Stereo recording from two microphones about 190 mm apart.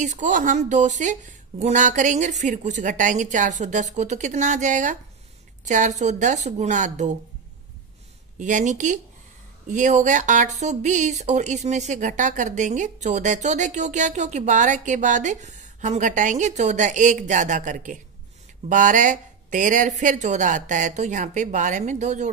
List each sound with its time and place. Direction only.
0.0 s speech: 40° right (ahead or behind)
8.4 s speech: 40° right (ahead or behind)